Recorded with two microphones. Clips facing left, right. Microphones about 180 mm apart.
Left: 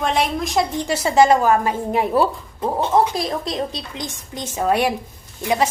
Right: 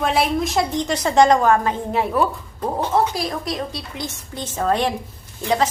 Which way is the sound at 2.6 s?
20° left (ahead or behind).